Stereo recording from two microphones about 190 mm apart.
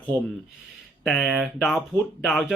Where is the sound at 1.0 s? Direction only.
Centre (ahead or behind).